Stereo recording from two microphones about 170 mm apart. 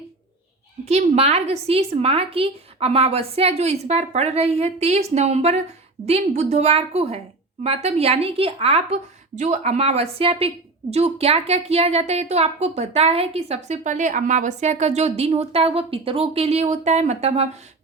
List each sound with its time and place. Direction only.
0.9 s a woman's voice: 40° right (ahead or behind)